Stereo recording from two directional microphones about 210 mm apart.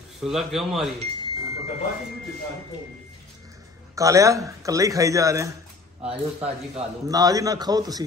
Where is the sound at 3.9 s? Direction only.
15° right (ahead or behind).